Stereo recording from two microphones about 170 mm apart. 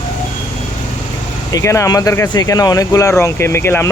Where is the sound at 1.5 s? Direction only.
15° left (ahead or behind).